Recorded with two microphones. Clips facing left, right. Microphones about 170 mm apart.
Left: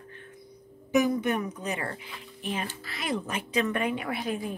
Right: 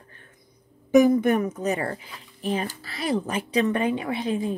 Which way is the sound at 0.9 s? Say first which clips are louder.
Right 7 dB; 50° right (ahead or behind).